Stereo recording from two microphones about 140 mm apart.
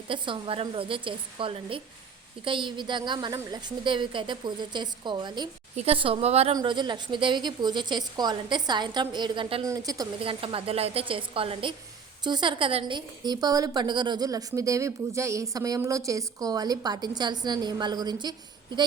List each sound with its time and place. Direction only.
0.1 s a woman's voice: 40° right (ahead or behind)
5.7 s speech: 45° right (ahead or behind)
6.6 s a woman's voice: 30° right (ahead or behind)
9.6 s a woman's voice: 25° right (ahead or behind)
10.2 s a woman's voice: 40° right (ahead or behind)